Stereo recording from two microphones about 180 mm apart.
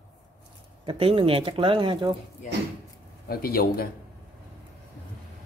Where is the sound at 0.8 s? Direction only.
30° right (ahead or behind).